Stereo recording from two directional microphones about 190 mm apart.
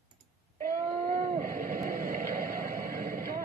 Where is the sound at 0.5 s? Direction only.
45° right (ahead or behind).